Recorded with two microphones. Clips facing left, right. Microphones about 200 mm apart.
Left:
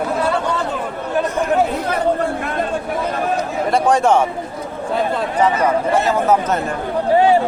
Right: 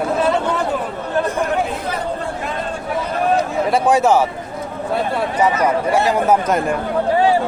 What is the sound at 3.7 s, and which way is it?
Speech, 5° right (ahead or behind).